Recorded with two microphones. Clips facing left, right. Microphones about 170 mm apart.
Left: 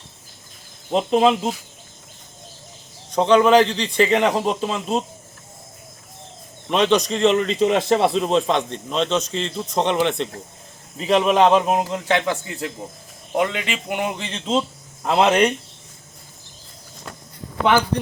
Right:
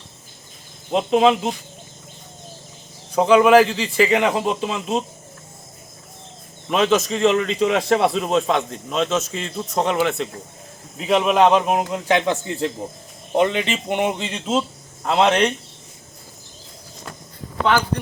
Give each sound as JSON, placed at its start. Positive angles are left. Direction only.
{"t": 0.9, "sound": "a man's voice", "side_deg": 0}
{"t": 3.1, "sound": "a man's voice", "side_deg": -5}
{"t": 6.7, "sound": "a man's voice", "side_deg": 0}
{"t": 14.3, "sound": "a man's voice", "side_deg": -5}